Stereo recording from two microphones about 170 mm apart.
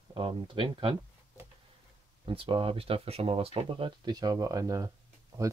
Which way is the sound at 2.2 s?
30° right (ahead or behind).